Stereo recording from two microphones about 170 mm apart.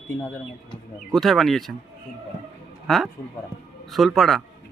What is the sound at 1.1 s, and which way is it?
Speech, centre (ahead or behind).